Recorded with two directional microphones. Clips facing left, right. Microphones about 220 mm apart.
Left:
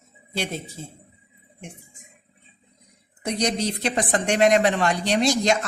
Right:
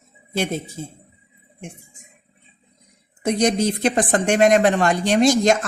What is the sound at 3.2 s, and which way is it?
A woman's voice, 50° right (ahead or behind).